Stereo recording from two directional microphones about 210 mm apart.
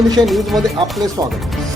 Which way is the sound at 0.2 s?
Centre (ahead or behind).